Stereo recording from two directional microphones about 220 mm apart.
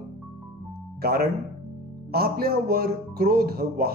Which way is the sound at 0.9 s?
45° right (ahead or behind).